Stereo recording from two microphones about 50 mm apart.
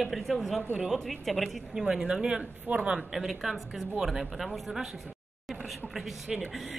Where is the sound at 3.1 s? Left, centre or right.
Centre.